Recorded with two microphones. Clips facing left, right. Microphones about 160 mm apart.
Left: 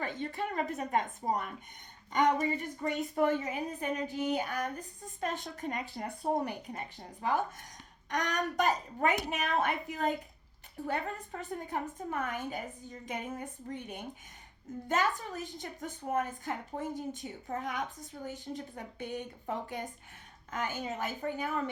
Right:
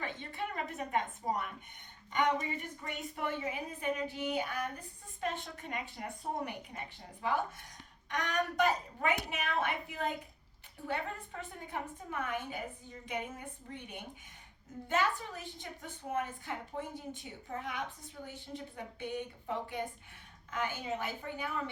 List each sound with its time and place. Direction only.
0.0 s a woman's voice: 40° left (ahead or behind)